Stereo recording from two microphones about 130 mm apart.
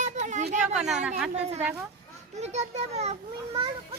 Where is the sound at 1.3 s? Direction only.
55° right (ahead or behind).